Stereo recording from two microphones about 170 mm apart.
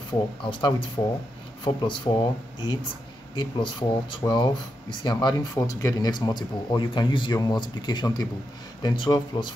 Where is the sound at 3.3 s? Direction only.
30° left (ahead or behind).